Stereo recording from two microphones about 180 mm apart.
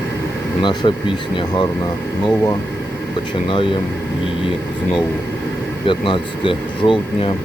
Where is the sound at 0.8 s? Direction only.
25° left (ahead or behind).